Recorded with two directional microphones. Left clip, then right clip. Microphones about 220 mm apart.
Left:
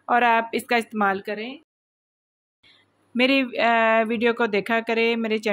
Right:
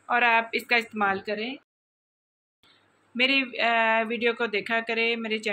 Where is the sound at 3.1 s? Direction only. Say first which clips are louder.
Left 3 dB; 55° left (ahead or behind).